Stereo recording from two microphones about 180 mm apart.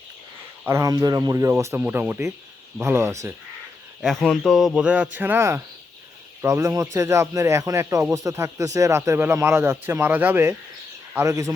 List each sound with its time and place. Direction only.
0.6 s speech: 15° right (ahead or behind)
4.0 s speech: centre (ahead or behind); by 11.5 s 15° right (ahead or behind)